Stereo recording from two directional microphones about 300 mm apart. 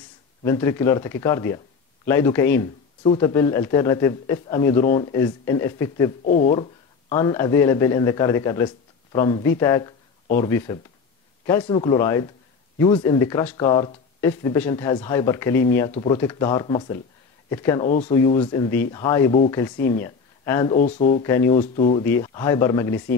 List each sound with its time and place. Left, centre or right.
0.4 s speech: centre
6.2 s speech: left
6.5 s speech: centre
10.2 s speech: left
10.5 s speech: centre
17.8 s speech: left
18.1 s speech: centre
20.7 s speech: left
21.2 s speech: centre
21.5 s speech: left